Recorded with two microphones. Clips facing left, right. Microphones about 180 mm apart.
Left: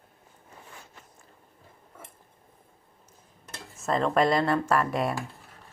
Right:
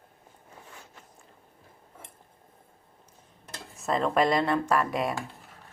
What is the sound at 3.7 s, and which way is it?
Speech, centre (ahead or behind).